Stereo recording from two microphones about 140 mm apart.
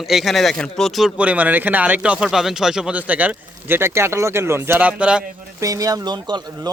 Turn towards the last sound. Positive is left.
turn(degrees=-30)  # may be behind; listen again after turning